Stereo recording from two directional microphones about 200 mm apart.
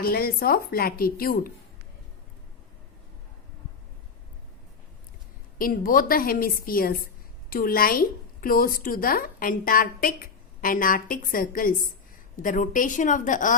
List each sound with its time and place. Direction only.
0.0 s a woman's voice: 50° left (ahead or behind)
5.5 s a woman's voice: 45° left (ahead or behind)